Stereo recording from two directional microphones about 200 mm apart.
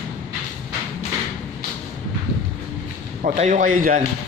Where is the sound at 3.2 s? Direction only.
35° right (ahead or behind).